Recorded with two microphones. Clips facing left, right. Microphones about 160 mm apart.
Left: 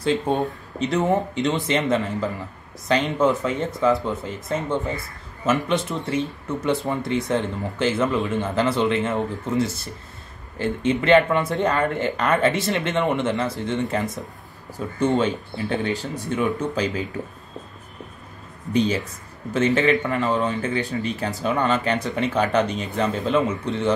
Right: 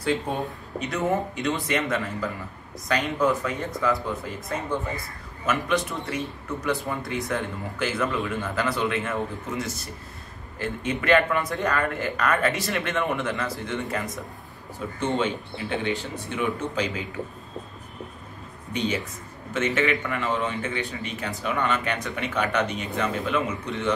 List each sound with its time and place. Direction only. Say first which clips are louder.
0.0 s a man's voice: left 5 dB; 25° left (ahead or behind)
18.7 s a man's voice: left 6 dB; 35° left (ahead or behind)